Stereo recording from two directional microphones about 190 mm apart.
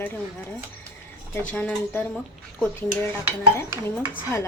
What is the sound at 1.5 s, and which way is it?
Speech, 10° left (ahead or behind).